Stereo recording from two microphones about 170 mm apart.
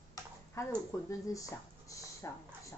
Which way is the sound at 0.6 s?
20° left (ahead or behind).